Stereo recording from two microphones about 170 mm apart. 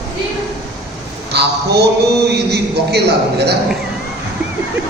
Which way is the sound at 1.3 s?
75° right (ahead or behind).